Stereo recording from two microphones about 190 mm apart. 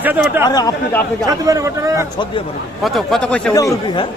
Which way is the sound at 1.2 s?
15° right (ahead or behind).